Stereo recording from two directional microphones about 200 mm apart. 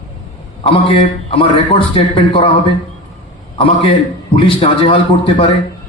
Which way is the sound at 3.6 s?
25° left (ahead or behind).